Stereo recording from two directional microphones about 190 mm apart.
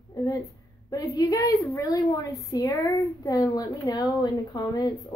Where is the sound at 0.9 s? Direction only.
20° left (ahead or behind).